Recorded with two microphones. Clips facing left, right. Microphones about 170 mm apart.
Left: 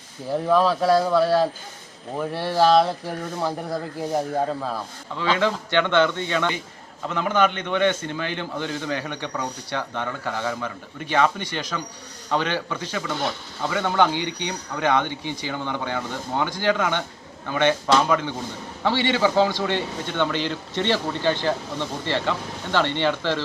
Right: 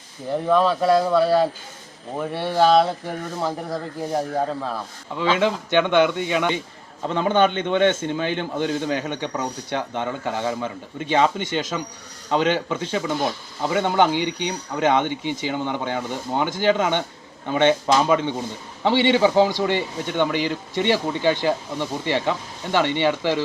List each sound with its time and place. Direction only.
0.3 s speech: centre (ahead or behind)
5.4 s a man's voice: 15° right (ahead or behind)
7.1 s a man's voice: 25° right (ahead or behind)